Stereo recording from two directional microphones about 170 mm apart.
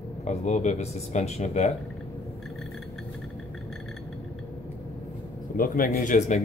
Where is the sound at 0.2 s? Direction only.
45° left (ahead or behind).